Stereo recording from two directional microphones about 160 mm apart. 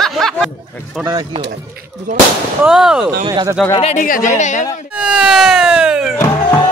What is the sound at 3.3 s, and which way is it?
Speech, 25° right (ahead or behind).